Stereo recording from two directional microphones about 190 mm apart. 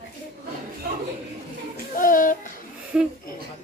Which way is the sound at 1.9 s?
45° left (ahead or behind).